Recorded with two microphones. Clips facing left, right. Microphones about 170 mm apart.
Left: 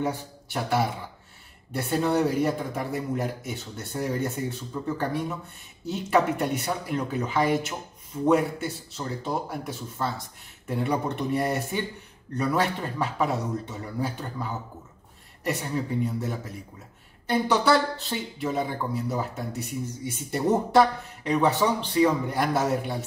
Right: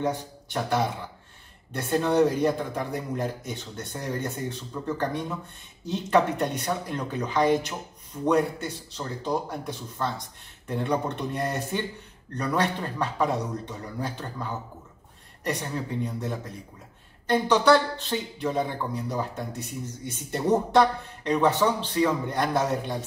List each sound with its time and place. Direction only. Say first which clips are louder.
0.0 s a man's voice: right 1 dB; 5° left (ahead or behind)